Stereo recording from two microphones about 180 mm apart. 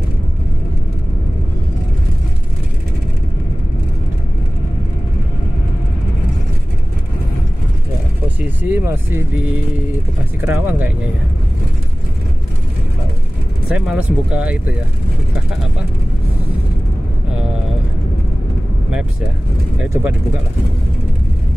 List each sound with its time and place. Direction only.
8.4 s speech: 10° right (ahead or behind)
13.7 s speech: 5° right (ahead or behind)
19.9 s speech: 10° right (ahead or behind)